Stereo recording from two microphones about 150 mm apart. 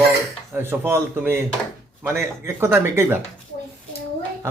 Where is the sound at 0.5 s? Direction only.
15° right (ahead or behind).